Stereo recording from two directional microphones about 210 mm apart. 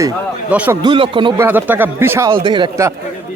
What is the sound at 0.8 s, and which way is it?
Speech, 25° right (ahead or behind).